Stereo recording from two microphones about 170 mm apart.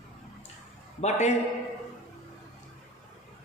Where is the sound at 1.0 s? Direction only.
40° left (ahead or behind).